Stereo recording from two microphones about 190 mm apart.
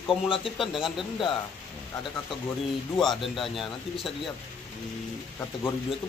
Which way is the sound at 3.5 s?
Centre (ahead or behind).